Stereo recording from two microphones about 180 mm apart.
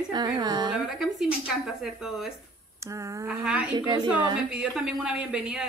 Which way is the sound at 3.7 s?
25° right (ahead or behind).